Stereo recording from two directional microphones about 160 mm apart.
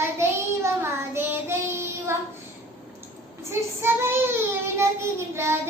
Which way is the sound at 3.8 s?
15° right (ahead or behind).